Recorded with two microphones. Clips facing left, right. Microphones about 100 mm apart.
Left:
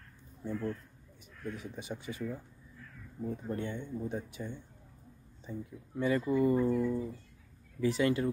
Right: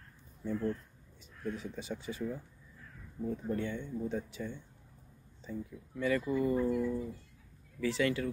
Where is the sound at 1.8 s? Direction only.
55° left (ahead or behind).